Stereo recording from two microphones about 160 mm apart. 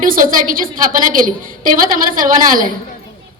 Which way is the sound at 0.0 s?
60° right (ahead or behind).